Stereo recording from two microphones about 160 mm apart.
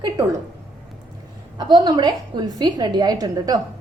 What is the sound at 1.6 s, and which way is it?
A woman's voice, 25° right (ahead or behind).